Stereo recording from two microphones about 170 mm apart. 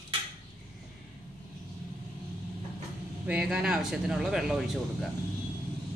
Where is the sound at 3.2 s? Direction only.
5° right (ahead or behind).